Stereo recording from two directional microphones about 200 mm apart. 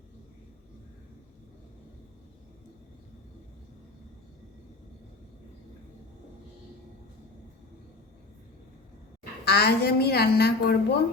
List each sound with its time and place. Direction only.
9.4 s a woman's voice: 55° left (ahead or behind)